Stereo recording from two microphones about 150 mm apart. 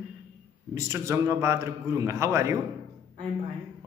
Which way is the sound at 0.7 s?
20° right (ahead or behind).